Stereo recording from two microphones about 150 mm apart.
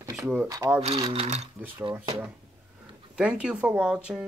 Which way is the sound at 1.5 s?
10° right (ahead or behind).